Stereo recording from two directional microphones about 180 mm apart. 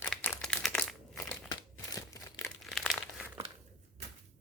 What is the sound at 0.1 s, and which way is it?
Crumpling, 10° left (ahead or behind).